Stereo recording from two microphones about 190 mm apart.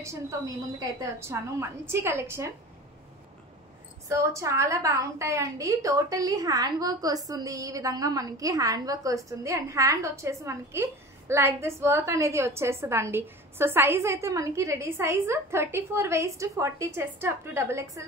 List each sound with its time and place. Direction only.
1.2 s a woman's voice: 15° right (ahead or behind)
4.1 s a woman's voice: 15° right (ahead or behind)